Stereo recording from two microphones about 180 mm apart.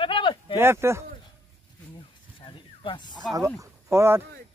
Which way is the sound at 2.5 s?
25° left (ahead or behind).